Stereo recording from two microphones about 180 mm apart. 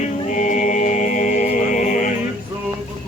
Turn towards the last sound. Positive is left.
turn(degrees=45)  # may be behind; listen again after turning